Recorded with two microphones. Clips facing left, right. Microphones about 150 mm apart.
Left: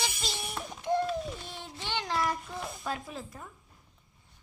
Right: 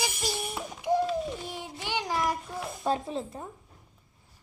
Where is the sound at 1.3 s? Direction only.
10° right (ahead or behind).